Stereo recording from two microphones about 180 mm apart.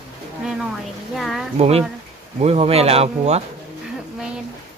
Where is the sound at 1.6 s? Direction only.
35° right (ahead or behind).